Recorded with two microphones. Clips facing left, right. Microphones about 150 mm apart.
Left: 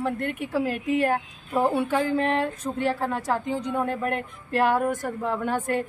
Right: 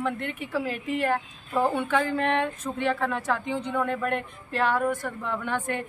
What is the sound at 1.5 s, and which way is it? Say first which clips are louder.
Speech: left 2 dB; 10° left (ahead or behind).